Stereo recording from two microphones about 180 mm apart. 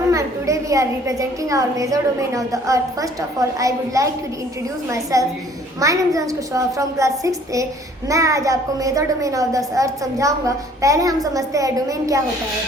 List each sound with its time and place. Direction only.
0.1 s a woman's voice: 15° right (ahead or behind)